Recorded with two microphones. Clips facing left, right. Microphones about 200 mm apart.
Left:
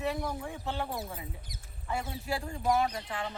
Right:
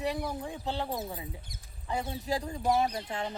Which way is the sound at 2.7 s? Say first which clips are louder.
Right 1 dB; 30° right (ahead or behind).